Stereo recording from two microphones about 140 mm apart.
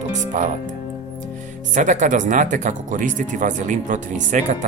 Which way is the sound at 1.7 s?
65° right (ahead or behind).